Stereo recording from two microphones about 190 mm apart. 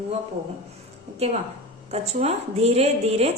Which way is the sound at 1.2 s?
35° right (ahead or behind).